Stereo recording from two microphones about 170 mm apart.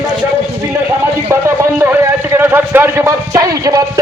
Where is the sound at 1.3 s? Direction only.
15° right (ahead or behind).